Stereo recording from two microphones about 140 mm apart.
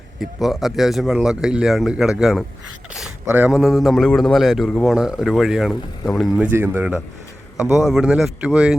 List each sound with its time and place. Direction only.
0.2 s speech: centre (ahead or behind)
2.9 s a sound: 10° right (ahead or behind)
3.5 s speech: centre (ahead or behind)
6.5 s speech: 15° right (ahead or behind)
7.7 s speech: 5° right (ahead or behind)